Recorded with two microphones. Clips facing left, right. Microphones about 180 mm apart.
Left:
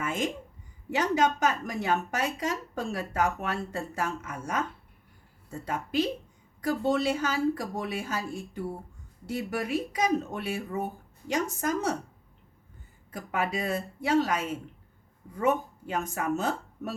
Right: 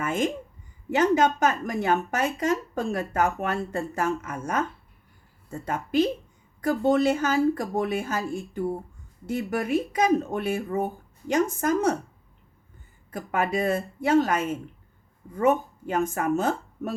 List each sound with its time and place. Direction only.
0.0 s a woman's voice: 50° right (ahead or behind)
13.1 s speech: 50° right (ahead or behind)